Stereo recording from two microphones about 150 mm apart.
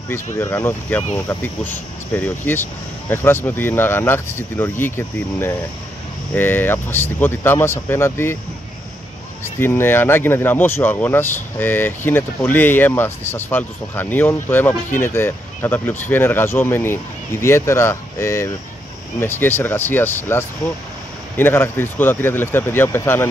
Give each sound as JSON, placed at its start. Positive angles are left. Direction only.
{"t": 0.1, "sound": "speech", "side_deg": 15}
{"t": 9.4, "sound": "speech", "side_deg": 15}